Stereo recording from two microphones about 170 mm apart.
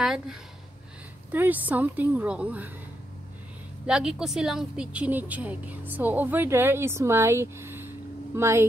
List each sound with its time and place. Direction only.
0.0 s speech: centre (ahead or behind)
3.8 s speech: 5° right (ahead or behind)